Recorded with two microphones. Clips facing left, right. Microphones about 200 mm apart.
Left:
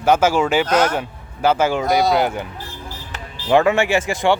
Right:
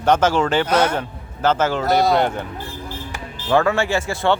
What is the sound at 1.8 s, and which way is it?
Speech, centre (ahead or behind).